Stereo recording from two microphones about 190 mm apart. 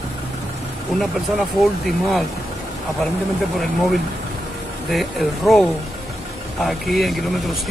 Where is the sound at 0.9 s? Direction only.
Centre (ahead or behind).